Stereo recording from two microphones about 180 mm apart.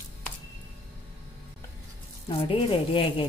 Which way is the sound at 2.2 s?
30° left (ahead or behind).